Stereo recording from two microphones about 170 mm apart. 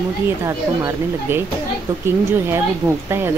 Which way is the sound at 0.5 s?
20° right (ahead or behind).